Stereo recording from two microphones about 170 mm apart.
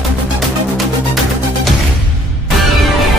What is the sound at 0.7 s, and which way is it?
Music, centre (ahead or behind).